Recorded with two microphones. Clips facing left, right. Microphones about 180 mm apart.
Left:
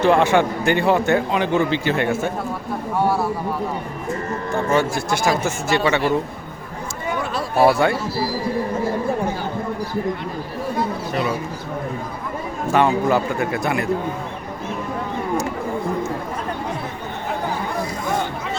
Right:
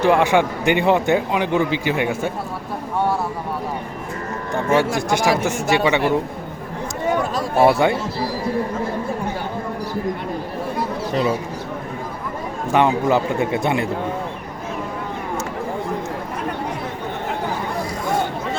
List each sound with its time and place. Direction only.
0.0 s a man's voice: 10° right (ahead or behind)
4.5 s a man's voice: 15° right (ahead or behind)
7.6 s a man's voice: 20° right (ahead or behind)
12.7 s a man's voice: 20° right (ahead or behind)